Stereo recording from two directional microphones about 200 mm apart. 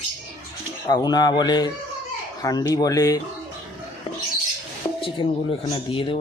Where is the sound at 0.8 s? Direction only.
20° left (ahead or behind).